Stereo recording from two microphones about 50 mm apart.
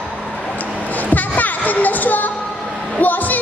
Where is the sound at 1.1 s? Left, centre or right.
Left.